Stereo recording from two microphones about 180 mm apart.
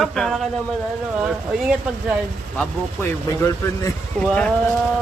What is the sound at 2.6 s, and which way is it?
Speech, 15° left (ahead or behind).